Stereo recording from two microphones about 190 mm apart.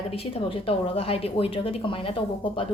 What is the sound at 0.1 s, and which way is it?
A woman's voice, 30° left (ahead or behind).